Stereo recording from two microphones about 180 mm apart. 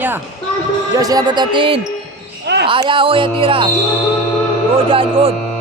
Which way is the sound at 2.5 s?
70° right (ahead or behind).